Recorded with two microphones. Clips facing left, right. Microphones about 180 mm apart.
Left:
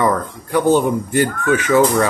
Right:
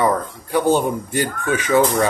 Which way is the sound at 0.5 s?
10° right (ahead or behind).